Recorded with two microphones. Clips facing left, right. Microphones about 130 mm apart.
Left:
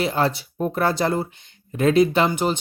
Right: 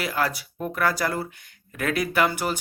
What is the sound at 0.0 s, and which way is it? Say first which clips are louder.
Speech: left 5 dB; 25° left (ahead or behind).